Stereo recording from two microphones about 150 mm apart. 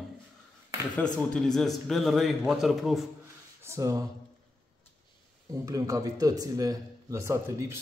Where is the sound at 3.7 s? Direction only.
20° right (ahead or behind).